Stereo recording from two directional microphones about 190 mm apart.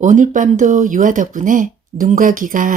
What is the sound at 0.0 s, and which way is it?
Speech, 40° right (ahead or behind).